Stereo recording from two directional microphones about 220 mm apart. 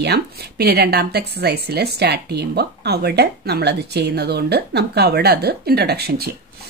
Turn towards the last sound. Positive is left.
turn(degrees=-45)  # may be behind; listen again after turning